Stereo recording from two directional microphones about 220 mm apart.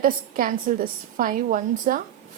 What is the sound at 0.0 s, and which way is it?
A woman's voice, 40° right (ahead or behind).